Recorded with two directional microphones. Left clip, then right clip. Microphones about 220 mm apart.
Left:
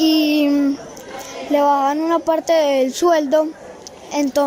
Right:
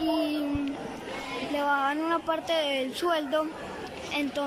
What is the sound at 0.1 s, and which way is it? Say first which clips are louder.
Child singing: left 12 dB; 45° left (ahead or behind).